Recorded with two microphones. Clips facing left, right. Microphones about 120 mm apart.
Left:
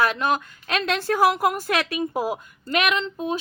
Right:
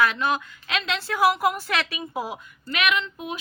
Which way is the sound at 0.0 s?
45° left (ahead or behind).